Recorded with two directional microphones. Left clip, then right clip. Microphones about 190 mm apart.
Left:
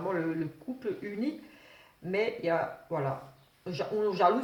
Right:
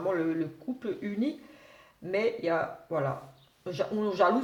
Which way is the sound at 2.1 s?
50° right (ahead or behind).